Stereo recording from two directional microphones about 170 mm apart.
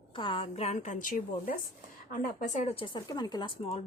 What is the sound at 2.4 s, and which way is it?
A woman's voice, 40° left (ahead or behind).